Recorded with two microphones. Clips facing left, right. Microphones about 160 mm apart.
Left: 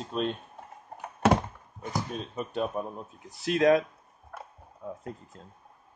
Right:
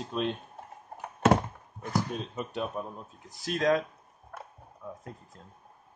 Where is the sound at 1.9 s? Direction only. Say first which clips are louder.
Right 2 dB; 20° left (ahead or behind).